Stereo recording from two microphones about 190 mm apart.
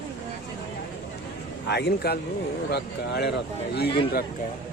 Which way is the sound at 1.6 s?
60° left (ahead or behind).